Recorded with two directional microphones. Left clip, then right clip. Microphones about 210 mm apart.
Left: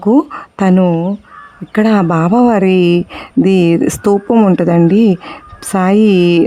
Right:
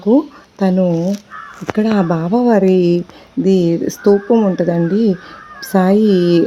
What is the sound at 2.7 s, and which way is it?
Speech, 35° left (ahead or behind).